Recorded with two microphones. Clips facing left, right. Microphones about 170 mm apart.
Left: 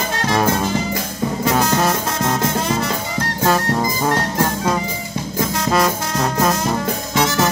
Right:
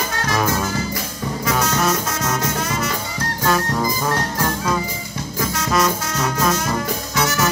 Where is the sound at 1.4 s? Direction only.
30° left (ahead or behind).